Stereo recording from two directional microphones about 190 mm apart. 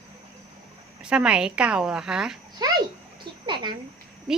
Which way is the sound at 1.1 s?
5° right (ahead or behind).